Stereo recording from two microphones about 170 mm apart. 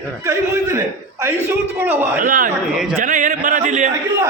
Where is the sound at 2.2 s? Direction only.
55° right (ahead or behind).